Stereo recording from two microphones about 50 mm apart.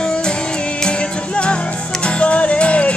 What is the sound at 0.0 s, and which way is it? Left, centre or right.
Music, centre.